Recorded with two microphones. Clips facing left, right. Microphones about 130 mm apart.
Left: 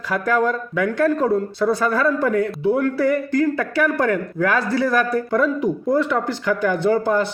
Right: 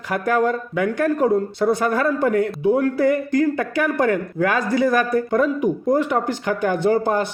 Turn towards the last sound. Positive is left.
turn(degrees=-15)  # may be behind; listen again after turning